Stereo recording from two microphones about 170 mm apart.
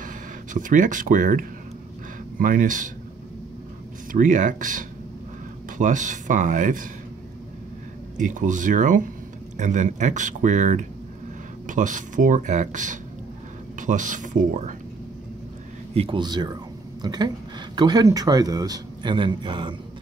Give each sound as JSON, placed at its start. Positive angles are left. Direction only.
{"t": 0.0, "sound": "speech", "side_deg": -50}
{"t": 4.1, "sound": "speech", "side_deg": -50}
{"t": 8.2, "sound": "speech", "side_deg": -50}
{"t": 15.9, "sound": "speech", "side_deg": -35}